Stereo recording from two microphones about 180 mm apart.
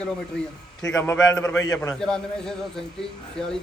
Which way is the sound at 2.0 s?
5° left (ahead or behind).